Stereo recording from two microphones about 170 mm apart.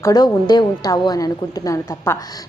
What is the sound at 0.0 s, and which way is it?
A woman's voice, 25° left (ahead or behind).